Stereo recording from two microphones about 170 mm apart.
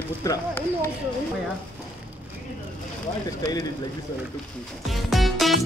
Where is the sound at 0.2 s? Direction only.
20° left (ahead or behind).